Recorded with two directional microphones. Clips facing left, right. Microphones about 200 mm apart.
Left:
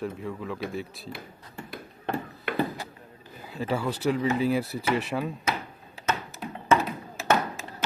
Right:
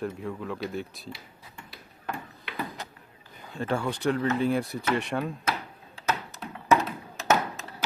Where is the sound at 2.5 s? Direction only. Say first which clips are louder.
Left 9 dB; 50° left (ahead or behind).